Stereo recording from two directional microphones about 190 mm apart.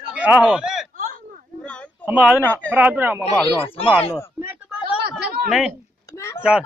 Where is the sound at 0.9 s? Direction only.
45° right (ahead or behind).